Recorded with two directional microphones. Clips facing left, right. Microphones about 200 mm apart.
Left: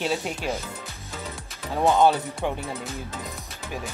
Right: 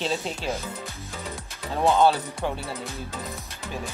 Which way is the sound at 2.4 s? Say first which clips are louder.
Left 1 dB; 15° left (ahead or behind).